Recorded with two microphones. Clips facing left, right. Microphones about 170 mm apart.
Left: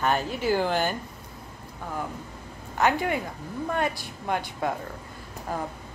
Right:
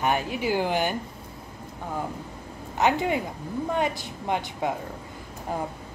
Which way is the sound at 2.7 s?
20° right (ahead or behind).